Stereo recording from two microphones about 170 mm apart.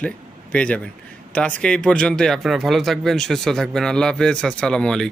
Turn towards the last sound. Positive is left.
turn(degrees=5)  # may be behind; listen again after turning